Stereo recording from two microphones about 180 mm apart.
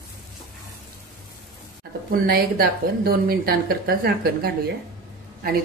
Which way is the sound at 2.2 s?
55° right (ahead or behind).